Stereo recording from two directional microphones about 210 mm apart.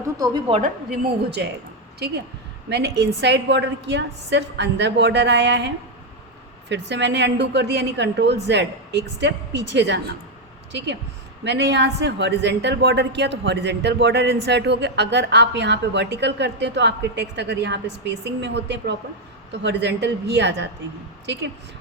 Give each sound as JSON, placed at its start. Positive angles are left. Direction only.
{"t": 0.0, "sound": "speech", "side_deg": -20}
{"t": 2.0, "sound": "a woman's voice", "side_deg": -50}